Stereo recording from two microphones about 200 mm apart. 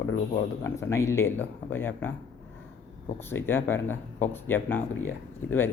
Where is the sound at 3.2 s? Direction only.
10° left (ahead or behind).